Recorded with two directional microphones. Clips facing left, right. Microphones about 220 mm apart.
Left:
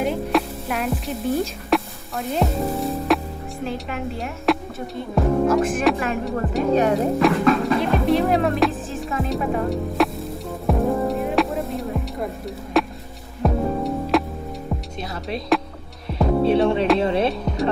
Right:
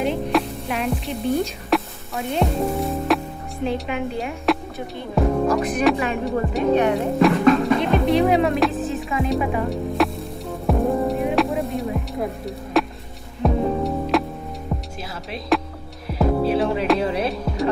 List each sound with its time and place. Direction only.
0.0 s speech: centre (ahead or behind)
6.7 s speech: 40° left (ahead or behind)
7.2 s music: centre (ahead or behind)